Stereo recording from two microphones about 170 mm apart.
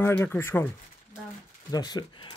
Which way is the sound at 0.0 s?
10° left (ahead or behind).